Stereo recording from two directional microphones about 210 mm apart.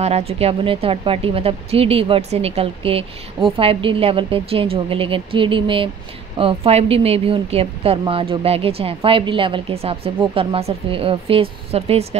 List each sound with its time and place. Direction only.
0.0 s speech: 30° right (ahead or behind)